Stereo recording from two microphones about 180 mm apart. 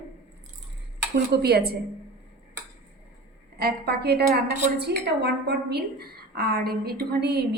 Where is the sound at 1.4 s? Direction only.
60° right (ahead or behind).